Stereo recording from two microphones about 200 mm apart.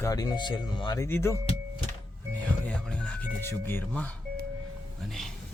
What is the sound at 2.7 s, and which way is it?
Speech, 5° left (ahead or behind).